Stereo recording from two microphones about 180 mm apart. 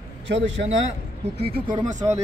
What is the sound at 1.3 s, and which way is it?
Speech, 60° right (ahead or behind).